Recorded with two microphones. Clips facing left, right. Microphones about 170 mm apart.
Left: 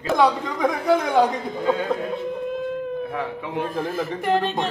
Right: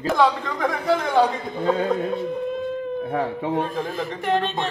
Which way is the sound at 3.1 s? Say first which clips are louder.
Right 5 dB; 35° right (ahead or behind).